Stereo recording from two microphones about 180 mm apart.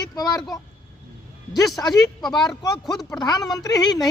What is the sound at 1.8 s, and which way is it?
Speech, 20° left (ahead or behind).